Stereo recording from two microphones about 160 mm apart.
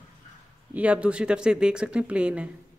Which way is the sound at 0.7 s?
10° right (ahead or behind).